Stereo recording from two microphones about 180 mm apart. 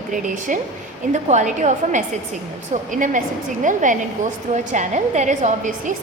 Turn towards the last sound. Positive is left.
turn(degrees=-45)  # may be behind; listen again after turning